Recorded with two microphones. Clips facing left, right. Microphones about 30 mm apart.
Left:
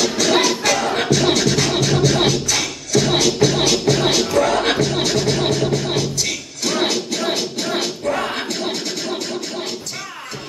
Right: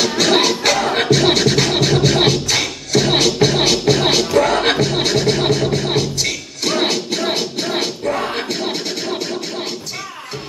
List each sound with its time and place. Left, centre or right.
0.0 s beatboxing: right
1.1 s music: right
8.0 s music: centre
8.5 s scratching: centre